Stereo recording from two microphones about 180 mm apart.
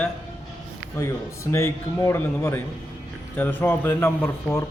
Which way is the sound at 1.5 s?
15° left (ahead or behind).